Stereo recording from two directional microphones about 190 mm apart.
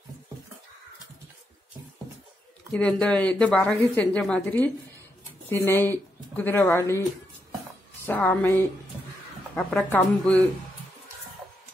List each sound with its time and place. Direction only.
2.7 s speech: 5° left (ahead or behind)
8.1 s speech: 10° left (ahead or behind)
9.8 s speech: 5° left (ahead or behind)